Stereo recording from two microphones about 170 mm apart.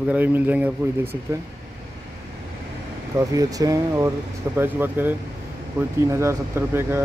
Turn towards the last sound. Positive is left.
turn(degrees=-15)  # may be behind; listen again after turning